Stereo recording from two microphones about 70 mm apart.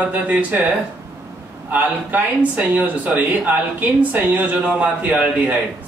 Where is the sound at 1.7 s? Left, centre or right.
Right.